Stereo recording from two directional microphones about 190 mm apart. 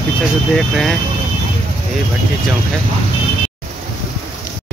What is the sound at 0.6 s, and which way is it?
Speech, centre (ahead or behind).